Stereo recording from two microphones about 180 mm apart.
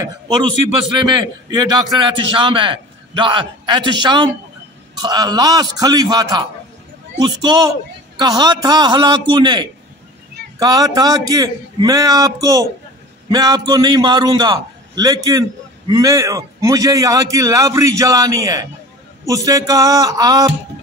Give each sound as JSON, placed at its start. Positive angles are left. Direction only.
{"t": 1.5, "sound": "a man's voice", "side_deg": -20}